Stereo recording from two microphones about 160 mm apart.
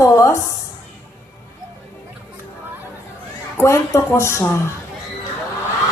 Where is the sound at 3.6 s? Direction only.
15° left (ahead or behind).